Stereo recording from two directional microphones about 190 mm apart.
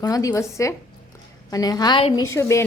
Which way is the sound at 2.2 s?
15° left (ahead or behind).